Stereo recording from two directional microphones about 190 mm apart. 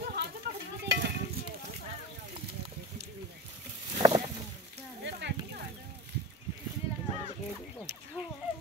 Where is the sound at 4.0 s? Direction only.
20° right (ahead or behind).